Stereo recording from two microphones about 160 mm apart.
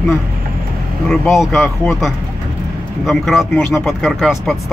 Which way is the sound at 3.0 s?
Centre (ahead or behind).